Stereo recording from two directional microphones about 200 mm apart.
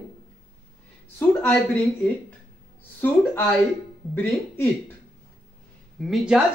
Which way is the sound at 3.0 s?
10° left (ahead or behind).